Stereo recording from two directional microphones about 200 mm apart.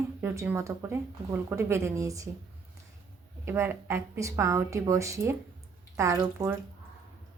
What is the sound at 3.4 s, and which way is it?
Speech, 15° right (ahead or behind).